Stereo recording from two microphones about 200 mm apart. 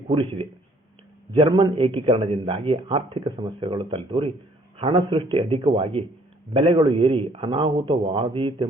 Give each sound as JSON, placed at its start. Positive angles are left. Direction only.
{"t": 0.1, "sound": "a man's voice", "side_deg": -25}